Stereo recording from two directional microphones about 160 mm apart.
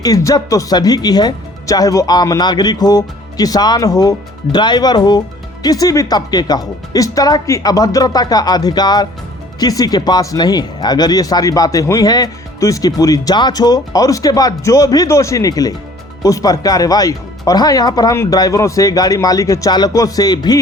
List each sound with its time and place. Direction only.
0.0 s speech: 20° left (ahead or behind)